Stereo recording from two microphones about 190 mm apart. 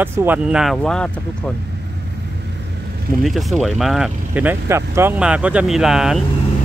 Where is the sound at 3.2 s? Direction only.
Centre (ahead or behind).